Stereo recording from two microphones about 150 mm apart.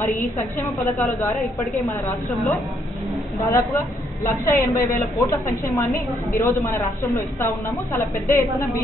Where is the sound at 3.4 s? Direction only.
20° left (ahead or behind).